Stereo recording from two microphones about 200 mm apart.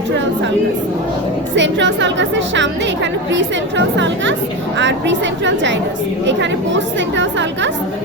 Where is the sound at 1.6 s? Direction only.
65° right (ahead or behind).